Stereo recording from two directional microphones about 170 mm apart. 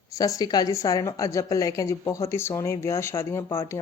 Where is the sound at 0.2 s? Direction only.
20° left (ahead or behind).